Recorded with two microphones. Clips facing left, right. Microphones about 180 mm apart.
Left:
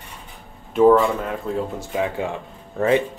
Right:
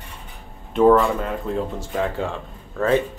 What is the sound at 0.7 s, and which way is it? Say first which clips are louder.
Speech: left 1 dB; 5° left (ahead or behind).